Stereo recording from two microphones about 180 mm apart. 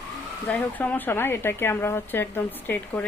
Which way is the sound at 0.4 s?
10° left (ahead or behind).